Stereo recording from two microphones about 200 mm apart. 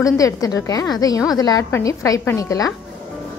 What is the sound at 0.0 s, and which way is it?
A woman's voice, 20° left (ahead or behind).